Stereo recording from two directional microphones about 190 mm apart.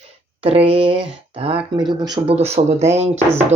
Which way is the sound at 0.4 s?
30° right (ahead or behind).